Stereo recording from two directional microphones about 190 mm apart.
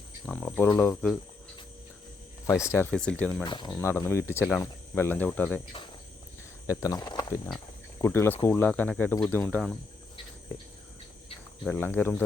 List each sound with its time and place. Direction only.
0.3 s speech: 10° left (ahead or behind)
2.5 s speech: 15° left (ahead or behind)
3.4 s speech: 25° left (ahead or behind)
3.7 s speech: 10° left (ahead or behind)
6.7 s speech: 15° left (ahead or behind)
8.0 s speech: 10° left (ahead or behind)
11.6 s speech: 10° left (ahead or behind)